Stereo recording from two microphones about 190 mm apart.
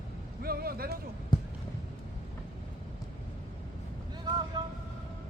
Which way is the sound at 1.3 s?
25° left (ahead or behind).